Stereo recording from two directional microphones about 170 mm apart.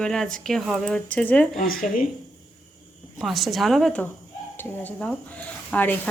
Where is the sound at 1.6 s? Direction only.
55° left (ahead or behind).